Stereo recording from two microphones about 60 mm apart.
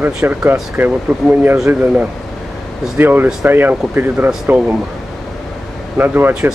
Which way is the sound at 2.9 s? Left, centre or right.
Right.